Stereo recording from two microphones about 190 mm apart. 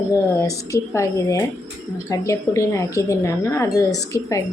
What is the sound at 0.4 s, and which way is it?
A woman's voice, 15° left (ahead or behind).